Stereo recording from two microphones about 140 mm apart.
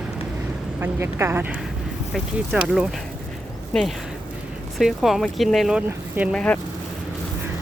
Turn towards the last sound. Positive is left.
turn(degrees=5)  # may be behind; listen again after turning